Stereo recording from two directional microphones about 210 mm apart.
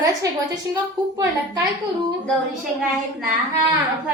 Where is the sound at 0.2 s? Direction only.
15° right (ahead or behind).